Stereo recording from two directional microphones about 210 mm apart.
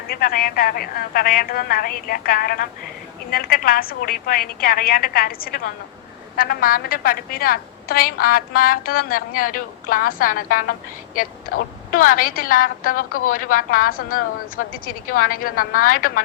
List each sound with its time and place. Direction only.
0.1 s a woman's voice: 45° left (ahead or behind)
13.1 s speech: 90° left
13.3 s a woman's voice: 40° left (ahead or behind)